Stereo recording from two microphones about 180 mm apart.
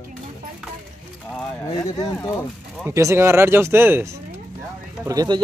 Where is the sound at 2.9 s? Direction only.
15° right (ahead or behind).